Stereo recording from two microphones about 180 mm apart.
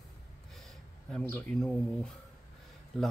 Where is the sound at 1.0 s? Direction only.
5° left (ahead or behind).